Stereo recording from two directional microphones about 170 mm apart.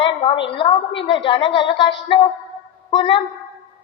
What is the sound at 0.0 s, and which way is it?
A woman's voice, 30° left (ahead or behind).